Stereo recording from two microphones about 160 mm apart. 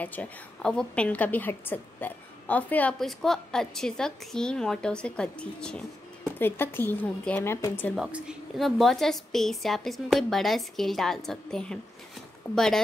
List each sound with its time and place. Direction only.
0.0 s a woman's voice: 10° left (ahead or behind)
7.9 s a woman's voice: 5° right (ahead or behind)